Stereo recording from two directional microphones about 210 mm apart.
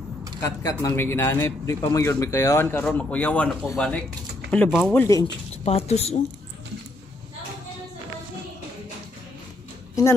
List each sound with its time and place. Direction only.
0.4 s a man's voice: 15° left (ahead or behind); by 5.0 s centre (ahead or behind)
5.5 s a woman's voice: 30° left (ahead or behind)